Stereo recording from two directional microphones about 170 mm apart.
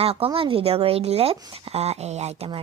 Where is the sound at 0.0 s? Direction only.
35° right (ahead or behind).